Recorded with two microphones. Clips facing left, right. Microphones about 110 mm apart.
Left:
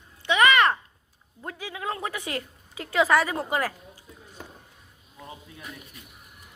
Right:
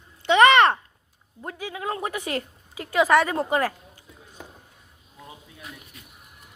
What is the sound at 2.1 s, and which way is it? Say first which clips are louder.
Speech: right 4 dB; 45° right (ahead or behind).